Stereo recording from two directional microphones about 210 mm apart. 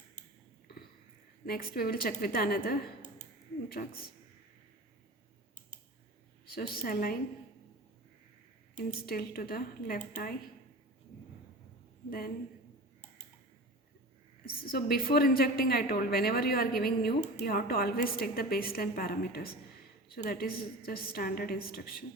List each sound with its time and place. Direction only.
1.5 s a woman's voice: 45° left (ahead or behind)
6.5 s a woman's voice: 45° left (ahead or behind)
8.8 s a woman's voice: 45° left (ahead or behind)
14.4 s a woman's voice: 45° left (ahead or behind)